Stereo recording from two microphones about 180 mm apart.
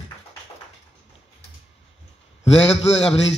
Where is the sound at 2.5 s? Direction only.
35° left (ahead or behind).